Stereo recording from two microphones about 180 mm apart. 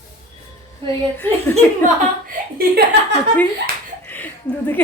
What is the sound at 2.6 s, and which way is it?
Speech, 65° right (ahead or behind).